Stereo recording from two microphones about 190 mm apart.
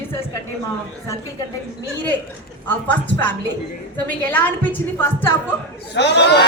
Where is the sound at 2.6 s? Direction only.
10° left (ahead or behind).